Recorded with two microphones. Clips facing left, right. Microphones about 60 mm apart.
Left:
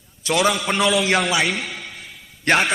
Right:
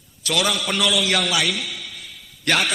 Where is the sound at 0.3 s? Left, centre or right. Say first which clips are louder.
Left 3 dB; left.